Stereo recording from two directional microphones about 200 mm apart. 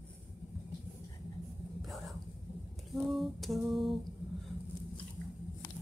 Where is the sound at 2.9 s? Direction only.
Centre (ahead or behind).